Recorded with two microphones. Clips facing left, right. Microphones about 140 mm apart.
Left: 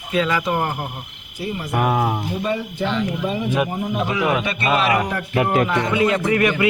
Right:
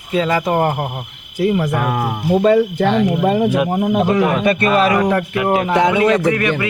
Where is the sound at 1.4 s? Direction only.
90° right.